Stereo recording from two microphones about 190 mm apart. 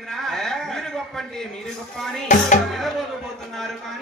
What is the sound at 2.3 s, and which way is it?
Speech, 40° left (ahead or behind).